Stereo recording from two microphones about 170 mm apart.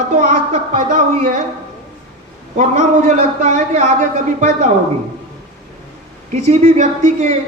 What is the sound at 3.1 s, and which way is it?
Speech, 45° right (ahead or behind).